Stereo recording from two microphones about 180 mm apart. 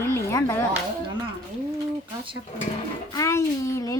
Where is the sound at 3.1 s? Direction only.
15° left (ahead or behind).